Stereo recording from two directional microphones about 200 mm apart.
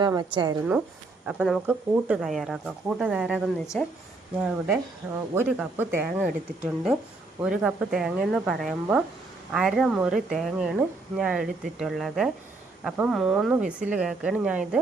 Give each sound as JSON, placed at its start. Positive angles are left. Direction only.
{"t": 0.0, "sound": "a woman's voice", "side_deg": -20}
{"t": 1.3, "sound": "speech", "side_deg": -5}
{"t": 4.4, "sound": "speech", "side_deg": -10}